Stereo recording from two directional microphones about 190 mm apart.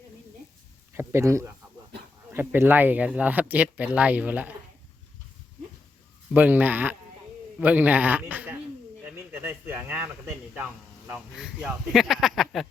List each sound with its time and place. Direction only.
0.9 s speech: 15° right (ahead or behind)
6.3 s speech: 10° right (ahead or behind)
9.0 s a sound: 10° right (ahead or behind)
11.1 s speech: centre (ahead or behind)